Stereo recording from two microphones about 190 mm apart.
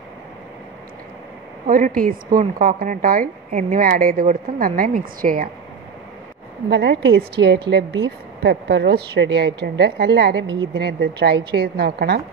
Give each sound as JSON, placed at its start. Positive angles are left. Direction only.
{"t": 1.7, "sound": "a woman's voice", "side_deg": -50}
{"t": 6.7, "sound": "a woman's voice", "side_deg": -65}